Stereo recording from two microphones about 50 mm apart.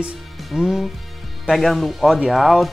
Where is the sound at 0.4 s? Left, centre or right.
Centre.